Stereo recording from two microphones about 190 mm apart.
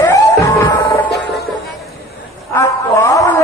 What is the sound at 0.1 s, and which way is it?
Music, 15° left (ahead or behind).